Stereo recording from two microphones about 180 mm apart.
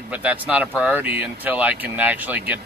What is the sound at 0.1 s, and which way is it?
Speech, 5° right (ahead or behind).